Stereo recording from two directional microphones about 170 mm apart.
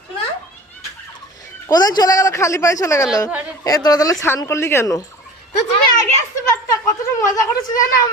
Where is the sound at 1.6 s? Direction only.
20° left (ahead or behind).